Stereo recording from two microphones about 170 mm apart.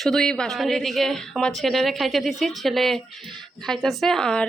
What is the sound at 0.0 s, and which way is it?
Speech, centre (ahead or behind).